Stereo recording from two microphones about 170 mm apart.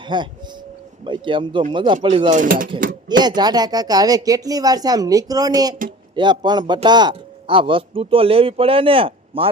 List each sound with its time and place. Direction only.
0.0 s speech: 25° right (ahead or behind)
2.3 s speech: 50° right (ahead or behind)
3.1 s speech: 25° right (ahead or behind)